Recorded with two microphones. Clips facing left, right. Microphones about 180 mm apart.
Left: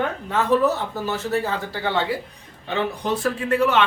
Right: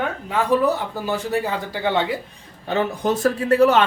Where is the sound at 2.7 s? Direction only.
45° right (ahead or behind).